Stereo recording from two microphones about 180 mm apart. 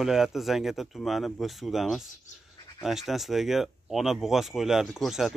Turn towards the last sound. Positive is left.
turn(degrees=0)  # may be behind; listen again after turning